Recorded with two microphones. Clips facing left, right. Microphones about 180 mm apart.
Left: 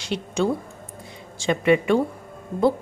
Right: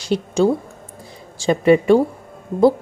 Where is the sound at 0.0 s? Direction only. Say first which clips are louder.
Right 7 dB; 35° right (ahead or behind).